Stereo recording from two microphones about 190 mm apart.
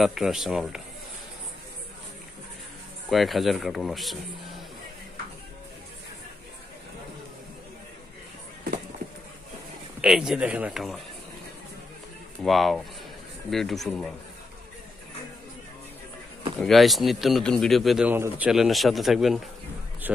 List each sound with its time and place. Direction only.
0.0 s speech: centre (ahead or behind)
3.1 s speech: centre (ahead or behind)
10.0 s speech: 5° right (ahead or behind)
12.4 s speech: centre (ahead or behind)
16.6 s speech: centre (ahead or behind)